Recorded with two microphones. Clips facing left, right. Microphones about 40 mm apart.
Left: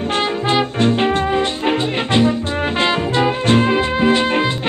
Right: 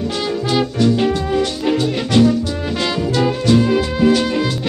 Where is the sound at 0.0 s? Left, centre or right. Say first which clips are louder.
Left 2 dB; left.